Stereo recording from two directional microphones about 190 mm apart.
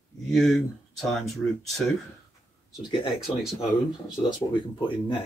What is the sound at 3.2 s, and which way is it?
Speech, centre (ahead or behind).